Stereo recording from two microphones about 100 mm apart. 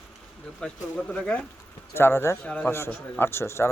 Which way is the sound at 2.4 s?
10° left (ahead or behind).